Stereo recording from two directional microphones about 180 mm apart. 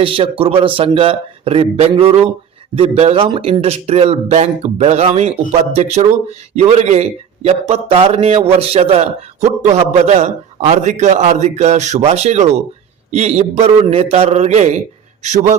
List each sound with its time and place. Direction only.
0.0 s a man's voice: 30° right (ahead or behind)